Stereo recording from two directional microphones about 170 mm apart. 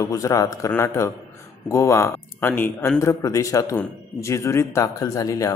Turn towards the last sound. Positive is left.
turn(degrees=20)  # may be behind; listen again after turning